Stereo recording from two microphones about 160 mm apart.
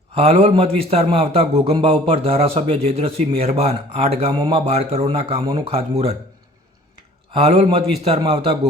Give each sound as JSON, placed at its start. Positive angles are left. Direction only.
{"t": 0.2, "sound": "a man's voice", "side_deg": -40}
{"t": 5.4, "sound": "a man's voice", "side_deg": -30}
{"t": 7.3, "sound": "a man's voice", "side_deg": -40}